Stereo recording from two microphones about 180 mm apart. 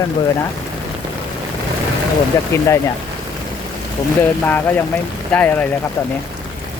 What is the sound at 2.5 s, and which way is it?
Speech, 15° left (ahead or behind).